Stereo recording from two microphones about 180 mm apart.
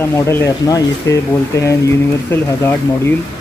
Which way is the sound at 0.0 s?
15° left (ahead or behind).